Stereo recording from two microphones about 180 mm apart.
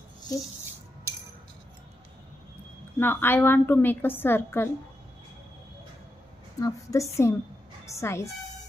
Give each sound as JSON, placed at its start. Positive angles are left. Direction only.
{"t": 3.0, "sound": "a woman's voice", "side_deg": 10}
{"t": 6.6, "sound": "a woman's voice", "side_deg": 15}